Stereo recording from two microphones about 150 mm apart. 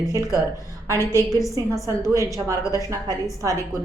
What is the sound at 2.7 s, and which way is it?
Speech, 20° right (ahead or behind).